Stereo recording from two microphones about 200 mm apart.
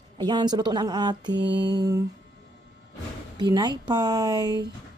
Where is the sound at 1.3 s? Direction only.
60° right (ahead or behind).